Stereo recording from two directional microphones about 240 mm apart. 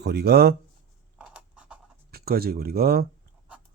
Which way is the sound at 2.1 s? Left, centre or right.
Right.